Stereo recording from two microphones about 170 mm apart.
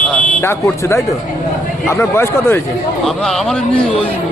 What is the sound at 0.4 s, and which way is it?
A man's voice, 15° left (ahead or behind).